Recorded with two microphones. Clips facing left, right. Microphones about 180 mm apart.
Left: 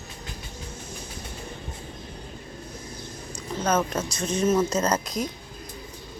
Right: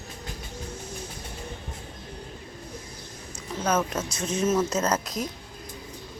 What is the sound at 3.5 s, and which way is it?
Speech, 5° right (ahead or behind).